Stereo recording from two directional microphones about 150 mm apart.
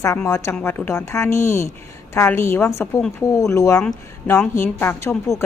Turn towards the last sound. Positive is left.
turn(degrees=15)  # may be behind; listen again after turning